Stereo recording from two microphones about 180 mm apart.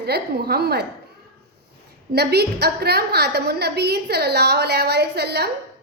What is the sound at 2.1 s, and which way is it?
A woman's voice, 65° right (ahead or behind).